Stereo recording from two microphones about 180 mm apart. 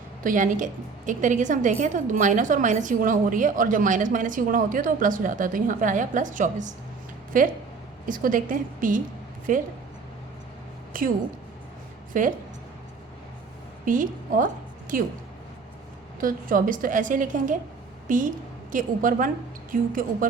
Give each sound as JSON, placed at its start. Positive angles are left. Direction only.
{"t": 0.2, "sound": "a woman's voice", "side_deg": -45}
{"t": 10.9, "sound": "a woman's voice", "side_deg": -50}
{"t": 12.1, "sound": "a woman's voice", "side_deg": -50}
{"t": 13.8, "sound": "a woman's voice", "side_deg": -45}
{"t": 16.2, "sound": "a woman's voice", "side_deg": -50}